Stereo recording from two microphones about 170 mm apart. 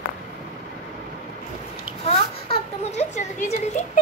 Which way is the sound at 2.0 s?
40° left (ahead or behind).